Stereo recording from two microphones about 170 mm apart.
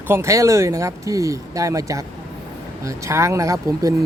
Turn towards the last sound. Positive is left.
turn(degrees=-20)  # may be behind; listen again after turning